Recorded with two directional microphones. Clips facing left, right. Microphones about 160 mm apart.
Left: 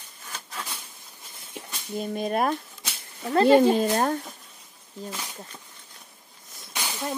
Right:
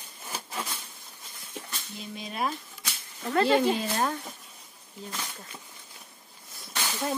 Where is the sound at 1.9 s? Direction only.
50° left (ahead or behind).